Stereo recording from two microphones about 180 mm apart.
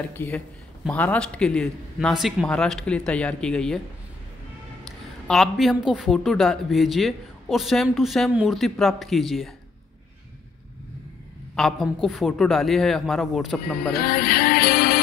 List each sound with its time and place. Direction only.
0.1 s a man's voice: 10° left (ahead or behind)
5.3 s a man's voice: centre (ahead or behind)
11.5 s a man's voice: centre (ahead or behind)
13.9 s music: 55° left (ahead or behind)